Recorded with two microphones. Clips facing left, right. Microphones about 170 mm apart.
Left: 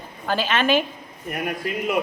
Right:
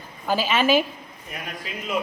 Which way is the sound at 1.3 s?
60° left (ahead or behind).